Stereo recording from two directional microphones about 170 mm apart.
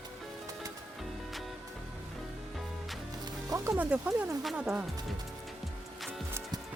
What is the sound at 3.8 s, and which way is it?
Speech, 10° right (ahead or behind).